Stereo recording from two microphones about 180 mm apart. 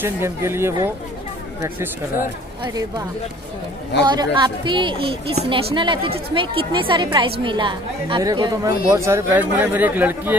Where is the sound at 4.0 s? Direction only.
25° right (ahead or behind).